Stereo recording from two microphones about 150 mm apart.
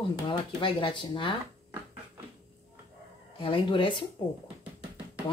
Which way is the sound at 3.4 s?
35° left (ahead or behind).